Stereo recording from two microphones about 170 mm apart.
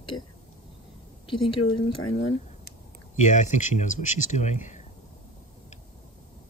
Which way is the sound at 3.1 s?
45° left (ahead or behind).